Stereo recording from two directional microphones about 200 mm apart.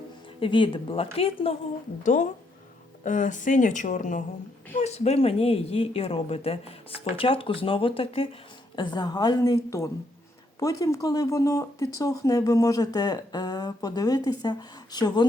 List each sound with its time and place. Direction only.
0.3 s speech: 25° left (ahead or behind)
3.0 s speech: 40° left (ahead or behind); by 15.3 s 20° left (ahead or behind)